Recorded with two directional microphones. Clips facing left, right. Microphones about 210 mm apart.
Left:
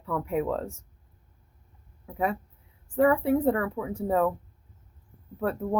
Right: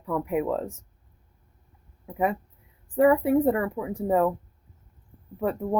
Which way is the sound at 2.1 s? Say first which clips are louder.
Right 2 dB; 15° right (ahead or behind).